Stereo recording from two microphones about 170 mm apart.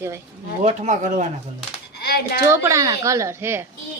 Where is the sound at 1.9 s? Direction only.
70° left (ahead or behind).